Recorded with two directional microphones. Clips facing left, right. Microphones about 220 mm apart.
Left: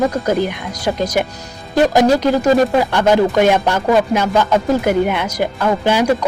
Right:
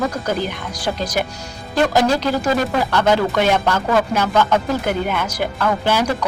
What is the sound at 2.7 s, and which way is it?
Speech, 15° left (ahead or behind).